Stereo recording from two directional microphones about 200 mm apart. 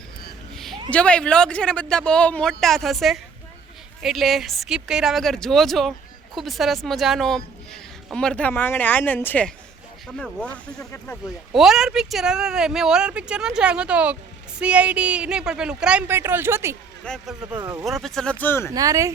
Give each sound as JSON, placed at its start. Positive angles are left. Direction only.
{"t": 0.5, "sound": "a sound", "side_deg": 0}
{"t": 0.9, "sound": "speech", "side_deg": 5}
{"t": 17.0, "sound": "speech", "side_deg": 5}
{"t": 17.4, "sound": "speech", "side_deg": -20}
{"t": 17.8, "sound": "speech", "side_deg": 0}
{"t": 18.7, "sound": "speech", "side_deg": -15}